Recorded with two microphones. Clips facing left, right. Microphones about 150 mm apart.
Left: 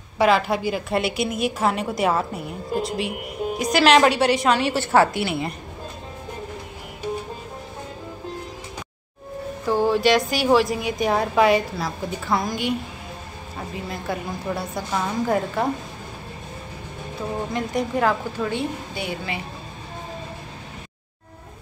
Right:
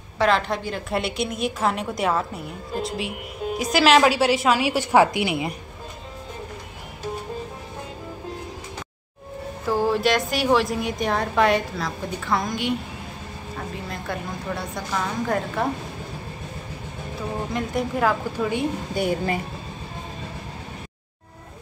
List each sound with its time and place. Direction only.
0.2 s a woman's voice: 10° left (ahead or behind); by 5.6 s 15° right (ahead or behind)
9.7 s a woman's voice: centre (ahead or behind)
13.8 s a woman's voice: 5° left (ahead or behind)
17.6 s a woman's voice: centre (ahead or behind)
18.9 s a woman's voice: 45° right (ahead or behind)